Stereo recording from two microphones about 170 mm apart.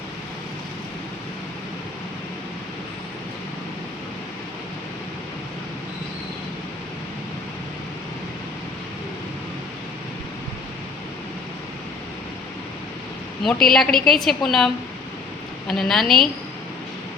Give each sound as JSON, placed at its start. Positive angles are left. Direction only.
{"t": 13.4, "sound": "a woman's voice", "side_deg": 0}